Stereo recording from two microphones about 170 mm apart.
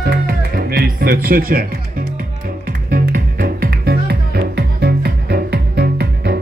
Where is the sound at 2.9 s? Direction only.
60° right (ahead or behind).